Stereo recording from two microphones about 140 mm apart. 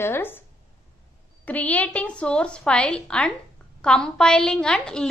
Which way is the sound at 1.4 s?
10° left (ahead or behind).